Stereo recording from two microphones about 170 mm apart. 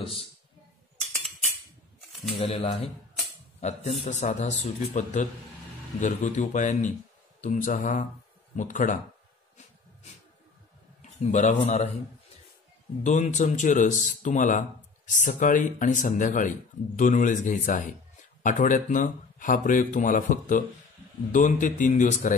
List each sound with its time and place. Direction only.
0.0 s speech: 35° left (ahead or behind)
2.3 s speech: 35° left (ahead or behind); by 9.0 s 50° left (ahead or behind)
11.0 s a man's voice: 45° left (ahead or behind)
13.0 s speech: 45° left (ahead or behind)